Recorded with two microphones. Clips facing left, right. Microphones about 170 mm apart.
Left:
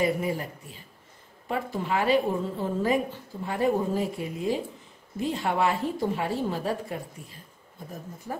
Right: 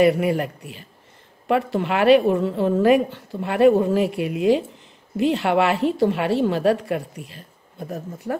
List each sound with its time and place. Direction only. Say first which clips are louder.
0.0 s speech: right 9 dB; 75° right (ahead or behind)